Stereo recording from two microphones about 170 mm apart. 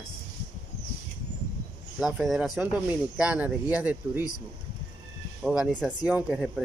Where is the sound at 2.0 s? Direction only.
Centre (ahead or behind).